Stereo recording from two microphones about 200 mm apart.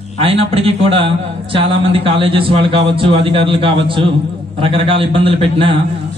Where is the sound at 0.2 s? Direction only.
30° right (ahead or behind).